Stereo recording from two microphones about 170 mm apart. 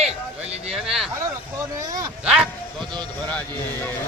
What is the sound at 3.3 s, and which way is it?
Speech, 10° left (ahead or behind).